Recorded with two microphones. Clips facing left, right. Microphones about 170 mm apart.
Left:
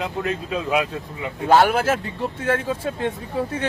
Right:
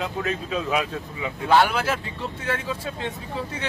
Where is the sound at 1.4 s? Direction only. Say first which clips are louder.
Left 3 dB; 45° left (ahead or behind).